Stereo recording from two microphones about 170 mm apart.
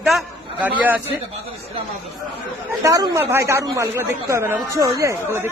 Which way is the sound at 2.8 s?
20° right (ahead or behind).